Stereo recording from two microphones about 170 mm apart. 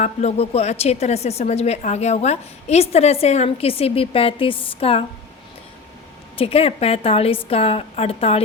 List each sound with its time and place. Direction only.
0.0 s a woman's voice: 40° left (ahead or behind)
6.3 s a woman's voice: 35° left (ahead or behind)